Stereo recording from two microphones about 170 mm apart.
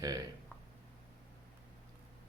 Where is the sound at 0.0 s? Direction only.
20° right (ahead or behind).